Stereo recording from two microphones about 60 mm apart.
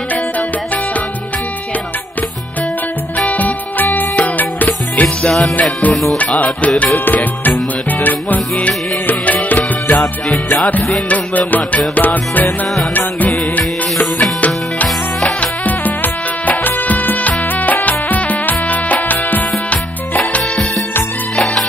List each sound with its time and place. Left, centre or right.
3.2 s music: left
14.1 s music: left